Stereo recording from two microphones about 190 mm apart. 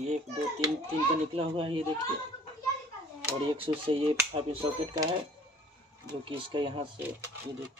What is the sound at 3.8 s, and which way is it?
Speech, 30° right (ahead or behind).